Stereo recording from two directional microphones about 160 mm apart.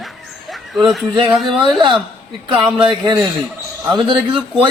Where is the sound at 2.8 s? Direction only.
30° right (ahead or behind).